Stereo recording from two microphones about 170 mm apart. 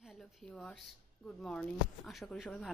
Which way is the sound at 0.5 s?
5° left (ahead or behind).